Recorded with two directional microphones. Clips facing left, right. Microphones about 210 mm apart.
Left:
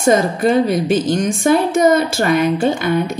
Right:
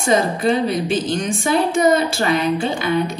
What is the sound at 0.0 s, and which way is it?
Speech, 50° left (ahead or behind).